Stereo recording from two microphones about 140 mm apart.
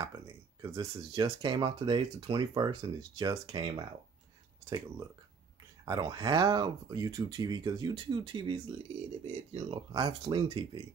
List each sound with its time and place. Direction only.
0.6 s speech: 25° right (ahead or behind)